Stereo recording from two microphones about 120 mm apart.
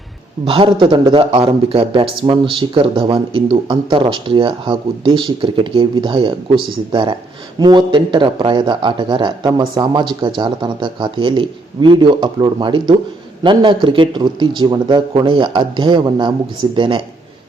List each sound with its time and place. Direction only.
0.4 s speech: 45° right (ahead or behind)